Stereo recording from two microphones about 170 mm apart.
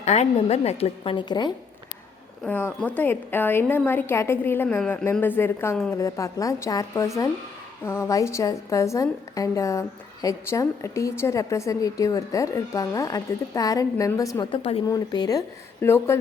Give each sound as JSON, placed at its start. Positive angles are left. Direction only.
{"t": 0.0, "sound": "a woman's voice", "side_deg": 40}
{"t": 2.4, "sound": "a woman's voice", "side_deg": 10}